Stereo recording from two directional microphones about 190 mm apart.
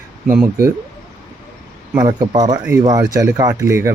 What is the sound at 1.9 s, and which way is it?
Speech, 20° right (ahead or behind).